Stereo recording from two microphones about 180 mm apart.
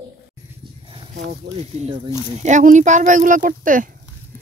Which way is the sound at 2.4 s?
40° right (ahead or behind).